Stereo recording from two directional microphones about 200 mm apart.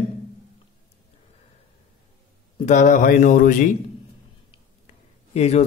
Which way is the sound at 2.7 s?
40° left (ahead or behind).